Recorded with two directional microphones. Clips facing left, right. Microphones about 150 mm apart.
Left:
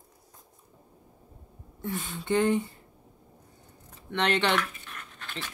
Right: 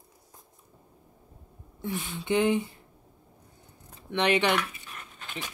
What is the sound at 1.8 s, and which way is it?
Speech, 10° right (ahead or behind).